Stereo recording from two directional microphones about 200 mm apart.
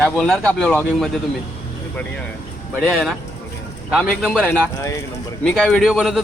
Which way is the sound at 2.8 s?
5° left (ahead or behind).